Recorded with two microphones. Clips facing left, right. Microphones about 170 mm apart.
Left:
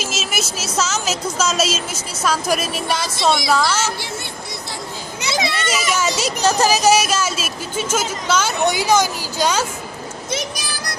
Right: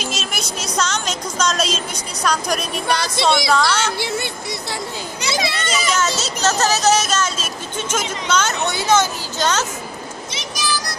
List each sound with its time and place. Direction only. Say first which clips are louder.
0.0 s a woman's voice: left 2 dB; 5° left (ahead or behind)
5.5 s speech: left 1 dB; 5° left (ahead or behind)
10.3 s a sound: right 1 dB; 55° left (ahead or behind)